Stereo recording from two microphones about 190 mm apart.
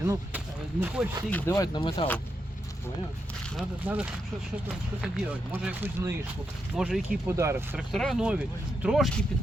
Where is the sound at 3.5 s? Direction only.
5° right (ahead or behind).